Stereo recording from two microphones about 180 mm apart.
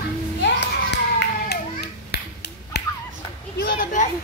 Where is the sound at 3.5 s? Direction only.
45° left (ahead or behind).